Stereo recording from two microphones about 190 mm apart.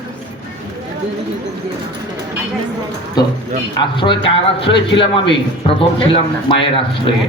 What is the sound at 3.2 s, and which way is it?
Speech, 20° left (ahead or behind).